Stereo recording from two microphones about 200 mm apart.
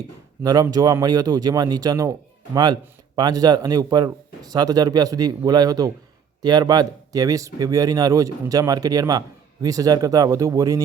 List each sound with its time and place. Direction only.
0.4 s speech: 20° right (ahead or behind)
3.2 s speech: 20° right (ahead or behind)